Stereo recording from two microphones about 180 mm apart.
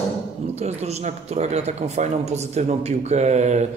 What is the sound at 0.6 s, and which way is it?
Speech, 35° right (ahead or behind).